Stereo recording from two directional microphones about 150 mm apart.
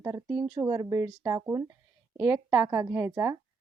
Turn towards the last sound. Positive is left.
turn(degrees=-20)  # may be behind; listen again after turning